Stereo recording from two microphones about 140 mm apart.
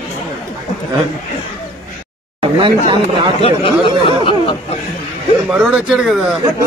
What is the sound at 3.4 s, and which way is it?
Speech, 40° left (ahead or behind).